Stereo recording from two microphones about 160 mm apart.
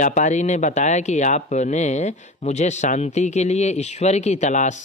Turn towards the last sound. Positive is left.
turn(degrees=50)  # may be behind; listen again after turning